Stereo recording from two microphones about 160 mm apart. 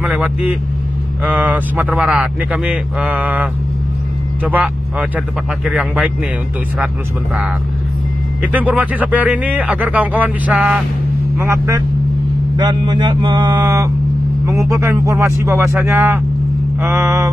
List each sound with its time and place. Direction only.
0.0 s a man's voice: 10° right (ahead or behind)
5.7 s speech: centre (ahead or behind)
8.4 s speech: 10° right (ahead or behind)
11.3 s speech: 15° right (ahead or behind)
12.5 s speech: 30° right (ahead or behind)